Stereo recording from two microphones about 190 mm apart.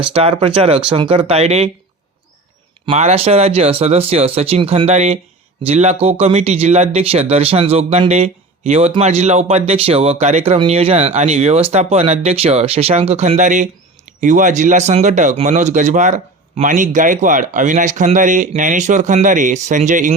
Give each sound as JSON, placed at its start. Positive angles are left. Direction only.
{"t": 0.1, "sound": "speech", "side_deg": -30}
{"t": 2.9, "sound": "speech", "side_deg": -35}